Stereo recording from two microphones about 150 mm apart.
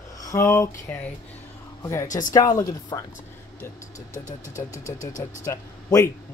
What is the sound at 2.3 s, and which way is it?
Speech, 25° left (ahead or behind).